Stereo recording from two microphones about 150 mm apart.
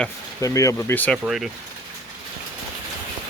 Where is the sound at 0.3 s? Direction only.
20° left (ahead or behind).